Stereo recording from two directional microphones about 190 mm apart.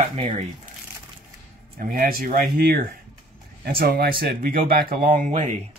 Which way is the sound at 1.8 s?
45° right (ahead or behind).